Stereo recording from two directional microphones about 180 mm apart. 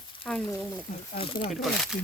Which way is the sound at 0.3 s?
5° left (ahead or behind).